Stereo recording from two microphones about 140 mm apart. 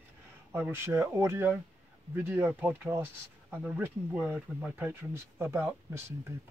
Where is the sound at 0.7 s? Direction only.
20° right (ahead or behind).